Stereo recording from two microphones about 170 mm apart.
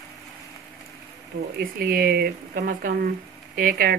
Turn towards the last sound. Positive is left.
turn(degrees=-55)  # may be behind; listen again after turning